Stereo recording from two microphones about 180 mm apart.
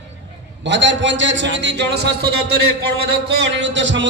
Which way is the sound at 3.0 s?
85° right.